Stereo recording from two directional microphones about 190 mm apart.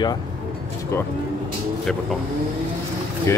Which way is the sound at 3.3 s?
15° left (ahead or behind).